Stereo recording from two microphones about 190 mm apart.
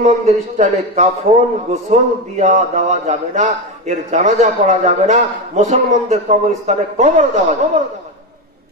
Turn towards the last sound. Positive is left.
turn(degrees=-40)  # may be behind; listen again after turning